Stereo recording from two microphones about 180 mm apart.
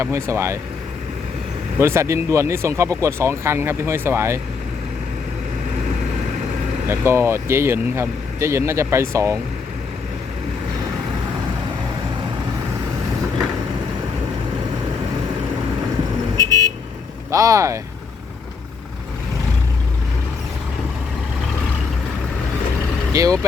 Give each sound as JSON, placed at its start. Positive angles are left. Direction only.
{"t": 0.0, "sound": "speech", "side_deg": -15}
{"t": 1.8, "sound": "speech", "side_deg": -15}
{"t": 6.8, "sound": "speech", "side_deg": -15}
{"t": 16.4, "sound": "vehicle", "side_deg": -20}
{"t": 17.3, "sound": "speech", "side_deg": -20}
{"t": 23.1, "sound": "speech", "side_deg": -20}